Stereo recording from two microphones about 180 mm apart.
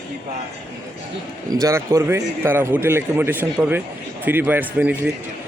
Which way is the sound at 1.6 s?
15° right (ahead or behind).